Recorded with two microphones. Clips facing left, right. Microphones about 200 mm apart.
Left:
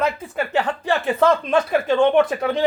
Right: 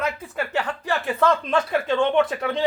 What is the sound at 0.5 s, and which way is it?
Speech, 25° left (ahead or behind).